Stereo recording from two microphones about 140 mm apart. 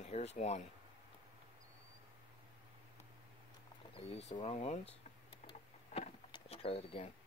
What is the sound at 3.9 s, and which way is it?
Speech, 50° left (ahead or behind).